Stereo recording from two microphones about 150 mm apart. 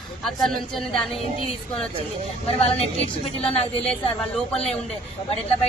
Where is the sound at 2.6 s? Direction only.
40° left (ahead or behind).